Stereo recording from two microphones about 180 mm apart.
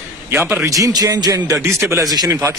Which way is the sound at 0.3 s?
10° right (ahead or behind).